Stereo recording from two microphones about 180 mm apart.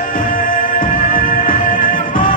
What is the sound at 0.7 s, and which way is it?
Music, 50° left (ahead or behind).